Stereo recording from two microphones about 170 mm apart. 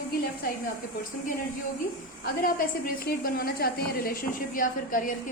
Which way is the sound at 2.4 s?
55° left (ahead or behind).